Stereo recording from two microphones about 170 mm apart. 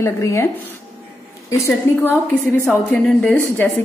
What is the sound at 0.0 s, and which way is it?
Speech, 15° left (ahead or behind).